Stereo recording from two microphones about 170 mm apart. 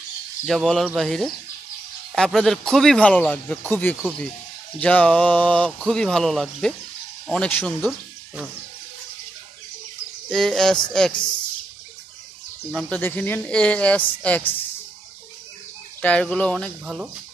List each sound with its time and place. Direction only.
0.5 s speech: centre (ahead or behind)
10.3 s speech: centre (ahead or behind)
12.7 s speech: 10° left (ahead or behind)
16.0 s speech: 5° left (ahead or behind)
16.8 s speech: 5° right (ahead or behind)